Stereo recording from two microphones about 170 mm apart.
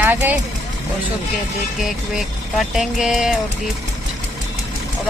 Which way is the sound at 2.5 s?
Centre (ahead or behind).